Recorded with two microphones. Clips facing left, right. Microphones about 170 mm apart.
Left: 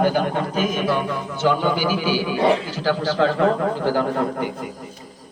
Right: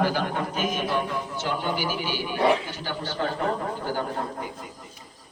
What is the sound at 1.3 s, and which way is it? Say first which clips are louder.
A man's voice: left 10 dB; 80° left.